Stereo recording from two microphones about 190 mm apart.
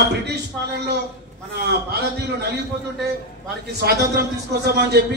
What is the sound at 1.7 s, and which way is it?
Speech, 55° right (ahead or behind).